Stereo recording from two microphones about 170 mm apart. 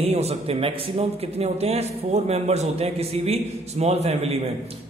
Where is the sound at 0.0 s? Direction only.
40° right (ahead or behind).